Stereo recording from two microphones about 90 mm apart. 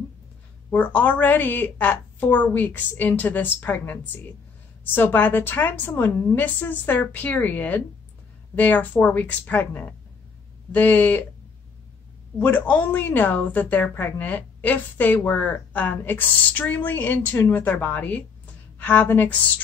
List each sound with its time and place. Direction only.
0.7 s a woman's voice: 20° left (ahead or behind)
12.4 s a woman's voice: 20° left (ahead or behind)